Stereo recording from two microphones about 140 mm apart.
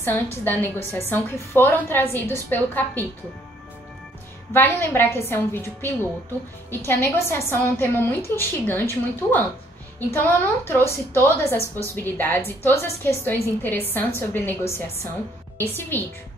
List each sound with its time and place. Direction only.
0.0 s a woman's voice: 15° left (ahead or behind)
4.6 s a woman's voice: 15° left (ahead or behind)